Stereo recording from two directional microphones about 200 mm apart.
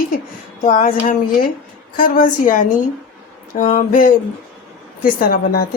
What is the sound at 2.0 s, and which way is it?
Speech, 45° left (ahead or behind).